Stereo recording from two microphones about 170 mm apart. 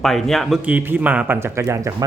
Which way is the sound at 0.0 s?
Centre (ahead or behind).